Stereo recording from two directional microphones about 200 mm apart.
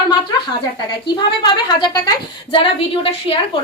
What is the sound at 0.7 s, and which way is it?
A woman's voice, 25° left (ahead or behind).